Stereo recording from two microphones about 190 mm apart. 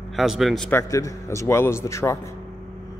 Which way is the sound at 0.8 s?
15° left (ahead or behind).